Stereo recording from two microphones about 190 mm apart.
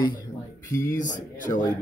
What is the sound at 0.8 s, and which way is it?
Speech, 45° left (ahead or behind).